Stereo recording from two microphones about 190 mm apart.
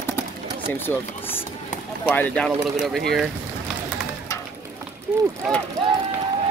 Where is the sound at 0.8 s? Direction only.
10° left (ahead or behind).